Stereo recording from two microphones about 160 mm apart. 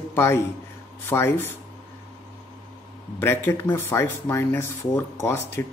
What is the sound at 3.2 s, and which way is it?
A man's voice, 15° left (ahead or behind).